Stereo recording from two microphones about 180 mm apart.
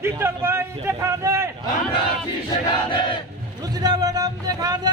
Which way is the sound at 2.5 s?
25° left (ahead or behind).